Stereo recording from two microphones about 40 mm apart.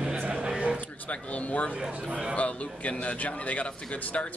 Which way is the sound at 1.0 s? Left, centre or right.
Left.